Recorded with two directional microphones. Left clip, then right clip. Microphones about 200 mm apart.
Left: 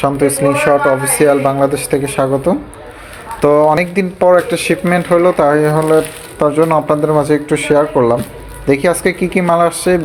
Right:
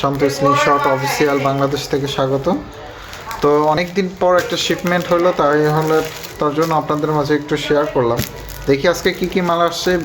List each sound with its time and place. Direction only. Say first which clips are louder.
0.0 s speech: left 3 dB; 20° left (ahead or behind)